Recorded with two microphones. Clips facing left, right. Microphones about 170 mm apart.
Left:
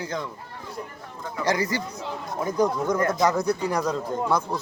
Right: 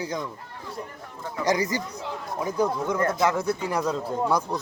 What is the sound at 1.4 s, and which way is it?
Speech, 20° right (ahead or behind).